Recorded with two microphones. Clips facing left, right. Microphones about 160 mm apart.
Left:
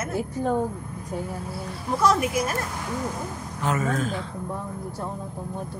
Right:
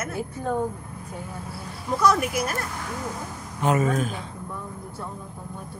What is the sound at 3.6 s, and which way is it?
Mantra, 20° right (ahead or behind).